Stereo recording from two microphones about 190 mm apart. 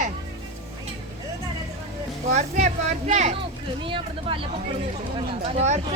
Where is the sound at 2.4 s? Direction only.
35° right (ahead or behind).